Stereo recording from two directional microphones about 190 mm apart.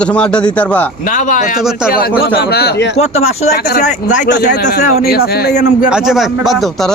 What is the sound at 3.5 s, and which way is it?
Speech, 55° left (ahead or behind).